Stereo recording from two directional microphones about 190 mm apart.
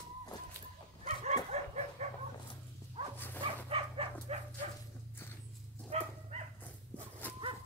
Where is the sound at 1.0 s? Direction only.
35° right (ahead or behind).